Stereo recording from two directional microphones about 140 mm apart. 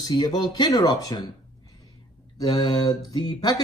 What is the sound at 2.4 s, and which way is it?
Speech, 30° left (ahead or behind).